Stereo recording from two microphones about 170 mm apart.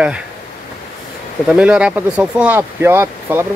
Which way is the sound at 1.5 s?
5° right (ahead or behind).